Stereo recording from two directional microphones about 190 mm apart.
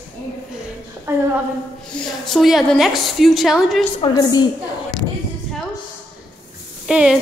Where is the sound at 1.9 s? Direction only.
5° left (ahead or behind).